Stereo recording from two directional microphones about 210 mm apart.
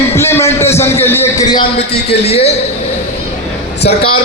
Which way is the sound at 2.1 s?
30° left (ahead or behind).